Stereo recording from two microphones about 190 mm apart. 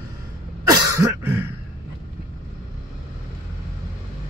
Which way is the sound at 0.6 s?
15° right (ahead or behind).